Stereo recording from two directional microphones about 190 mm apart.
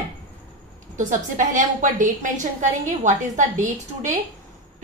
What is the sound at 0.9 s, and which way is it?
A woman's voice, 40° right (ahead or behind).